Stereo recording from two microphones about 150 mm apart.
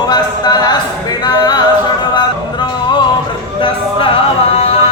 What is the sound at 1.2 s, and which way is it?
Singing, 25° left (ahead or behind).